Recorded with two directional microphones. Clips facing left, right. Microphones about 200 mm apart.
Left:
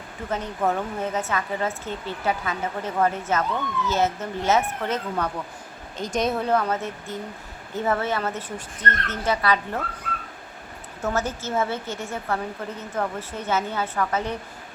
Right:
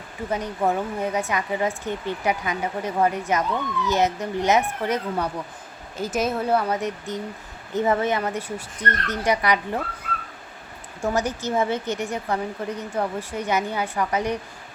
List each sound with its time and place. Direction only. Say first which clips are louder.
0.3 s a woman's voice: right 1 dB; 10° right (ahead or behind)
11.0 s a woman's voice: right 2 dB; 15° right (ahead or behind)